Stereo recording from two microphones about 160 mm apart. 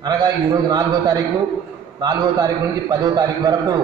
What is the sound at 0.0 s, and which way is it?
A man's voice, 25° right (ahead or behind).